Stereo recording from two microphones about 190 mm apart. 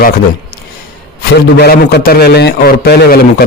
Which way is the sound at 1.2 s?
55° left (ahead or behind).